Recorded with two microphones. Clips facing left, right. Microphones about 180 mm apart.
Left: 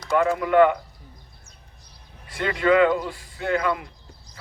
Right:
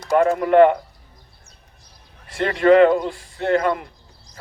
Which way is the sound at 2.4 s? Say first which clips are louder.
Right 5 dB; 45° right (ahead or behind).